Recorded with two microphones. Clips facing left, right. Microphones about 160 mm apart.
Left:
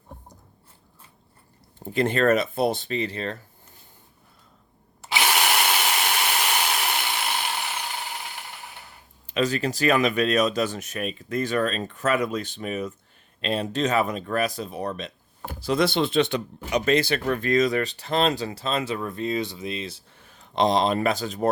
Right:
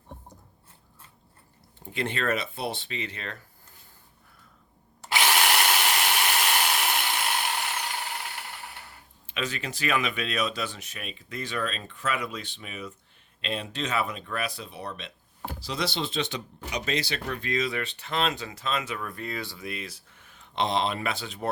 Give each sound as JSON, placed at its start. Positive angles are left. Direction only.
{"t": 1.8, "sound": "speech", "side_deg": 40}
{"t": 5.3, "sound": "a sound", "side_deg": 5}
{"t": 9.2, "sound": "speech", "side_deg": 40}